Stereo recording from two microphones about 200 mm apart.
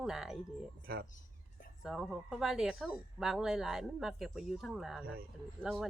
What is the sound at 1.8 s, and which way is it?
Speech, centre (ahead or behind).